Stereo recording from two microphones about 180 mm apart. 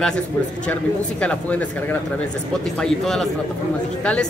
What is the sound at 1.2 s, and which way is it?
Speech, 5° left (ahead or behind).